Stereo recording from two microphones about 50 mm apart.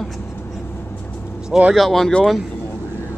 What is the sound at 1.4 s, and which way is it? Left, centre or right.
Speech, centre.